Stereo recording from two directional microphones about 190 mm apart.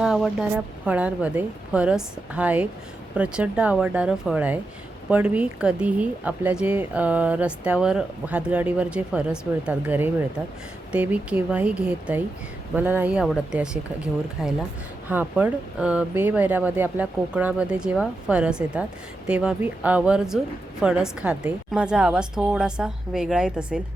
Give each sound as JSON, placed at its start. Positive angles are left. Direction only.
{"t": 0.0, "sound": "a woman's voice", "side_deg": -5}